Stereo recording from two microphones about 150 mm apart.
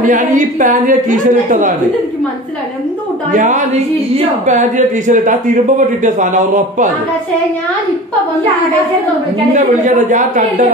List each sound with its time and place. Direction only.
0.0 s a man's voice: 60° right (ahead or behind)
3.3 s a man's voice: 55° right (ahead or behind)
9.5 s a man's voice: 55° right (ahead or behind)